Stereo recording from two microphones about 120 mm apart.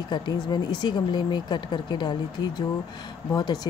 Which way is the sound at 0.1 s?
40° left (ahead or behind).